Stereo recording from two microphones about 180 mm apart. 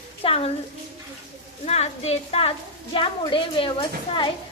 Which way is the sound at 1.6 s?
35° left (ahead or behind).